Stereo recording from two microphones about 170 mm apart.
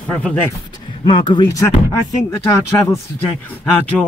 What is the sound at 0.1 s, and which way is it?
Speech, 5° left (ahead or behind).